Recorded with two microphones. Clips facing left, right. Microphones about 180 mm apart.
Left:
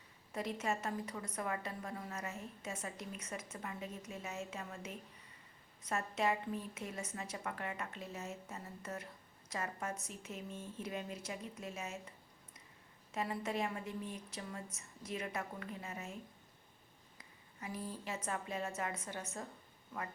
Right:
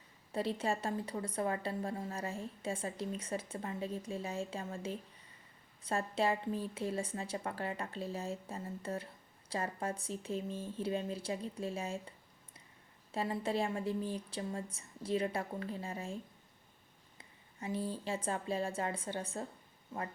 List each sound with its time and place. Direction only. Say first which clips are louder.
0.3 s speech: right 4 dB; 30° right (ahead or behind)
17.2 s speech: right 4 dB; 30° right (ahead or behind)